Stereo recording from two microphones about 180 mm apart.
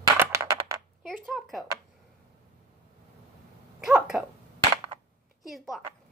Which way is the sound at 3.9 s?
Centre (ahead or behind).